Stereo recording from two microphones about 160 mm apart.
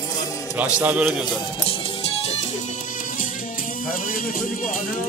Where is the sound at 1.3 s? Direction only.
35° left (ahead or behind).